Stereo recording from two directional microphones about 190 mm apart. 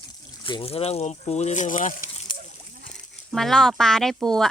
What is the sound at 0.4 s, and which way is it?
Speech, 30° left (ahead or behind).